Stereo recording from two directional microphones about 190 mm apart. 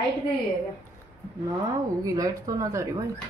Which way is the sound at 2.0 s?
20° right (ahead or behind).